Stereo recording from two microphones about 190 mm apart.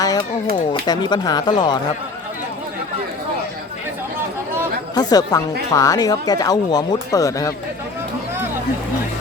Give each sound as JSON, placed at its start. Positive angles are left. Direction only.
{"t": 0.0, "sound": "a sound", "side_deg": 20}
{"t": 0.5, "sound": "speech", "side_deg": 25}
{"t": 4.9, "sound": "speech", "side_deg": 20}